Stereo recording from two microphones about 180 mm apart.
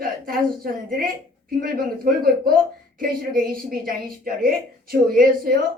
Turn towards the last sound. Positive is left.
turn(degrees=-50)  # may be behind; listen again after turning